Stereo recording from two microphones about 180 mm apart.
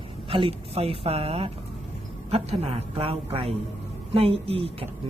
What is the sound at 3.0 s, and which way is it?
A woman's voice, 30° right (ahead or behind).